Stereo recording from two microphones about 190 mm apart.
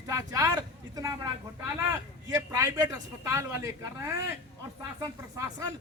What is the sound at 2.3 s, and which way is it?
Speech, 15° right (ahead or behind).